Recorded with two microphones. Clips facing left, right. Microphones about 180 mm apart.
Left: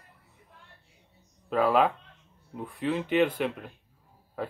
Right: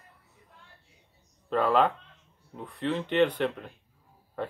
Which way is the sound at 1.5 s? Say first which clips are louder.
Left 1 dB; 5° left (ahead or behind).